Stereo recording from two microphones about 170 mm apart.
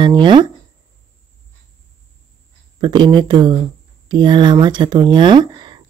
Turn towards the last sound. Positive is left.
turn(degrees=-25)  # may be behind; listen again after turning